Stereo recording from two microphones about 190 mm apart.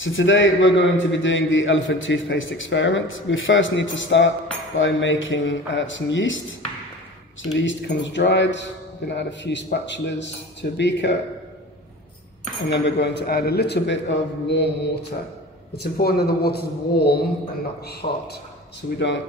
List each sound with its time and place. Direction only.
0.0 s a man's voice: 85° left
7.6 s a man's voice: 70° left (ahead or behind)
12.6 s a man's voice: 65° left (ahead or behind)
15.7 s a man's voice: 55° left (ahead or behind)
18.8 s a man's voice: 70° left (ahead or behind)